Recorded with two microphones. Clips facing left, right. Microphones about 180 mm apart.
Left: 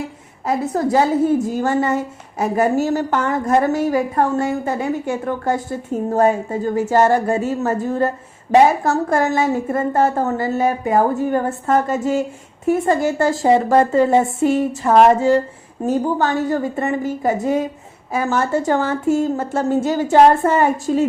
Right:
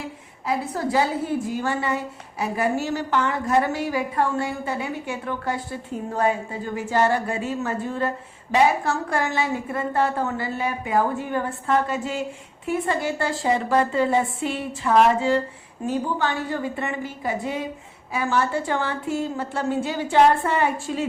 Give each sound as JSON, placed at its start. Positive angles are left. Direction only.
{"t": 0.4, "sound": "a woman's voice", "side_deg": 45}